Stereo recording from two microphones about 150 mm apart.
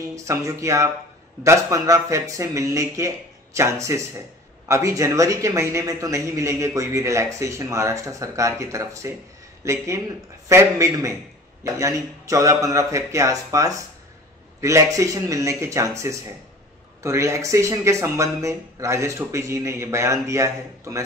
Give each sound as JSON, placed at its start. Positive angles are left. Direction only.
{"t": 0.1, "sound": "a man's voice", "side_deg": -20}